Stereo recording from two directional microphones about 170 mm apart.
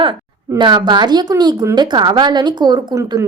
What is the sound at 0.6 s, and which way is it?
A woman's voice, 25° right (ahead or behind).